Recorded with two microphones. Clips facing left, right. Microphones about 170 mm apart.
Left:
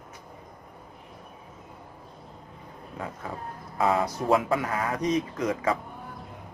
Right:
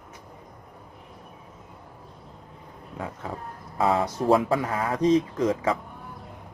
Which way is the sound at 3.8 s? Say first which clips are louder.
Right 1 dB; 30° right (ahead or behind).